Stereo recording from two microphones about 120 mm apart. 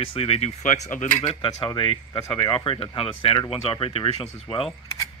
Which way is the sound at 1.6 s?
45° left (ahead or behind).